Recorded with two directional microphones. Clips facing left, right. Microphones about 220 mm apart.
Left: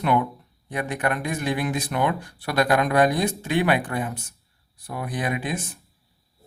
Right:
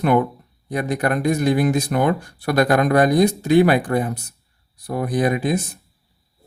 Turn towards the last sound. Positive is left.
turn(degrees=-40)  # may be behind; listen again after turning